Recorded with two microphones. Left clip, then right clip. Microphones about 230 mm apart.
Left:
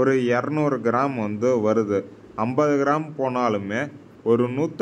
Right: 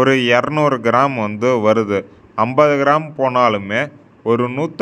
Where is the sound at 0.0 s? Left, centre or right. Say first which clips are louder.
Right 7 dB; right.